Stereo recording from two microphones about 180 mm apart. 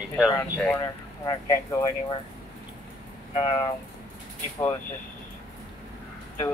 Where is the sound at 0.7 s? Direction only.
20° left (ahead or behind).